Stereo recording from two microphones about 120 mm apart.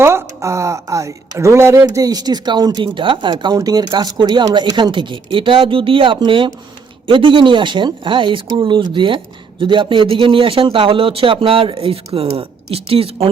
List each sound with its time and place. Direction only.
0.0 s speech: 20° right (ahead or behind); by 13.3 s 55° right (ahead or behind)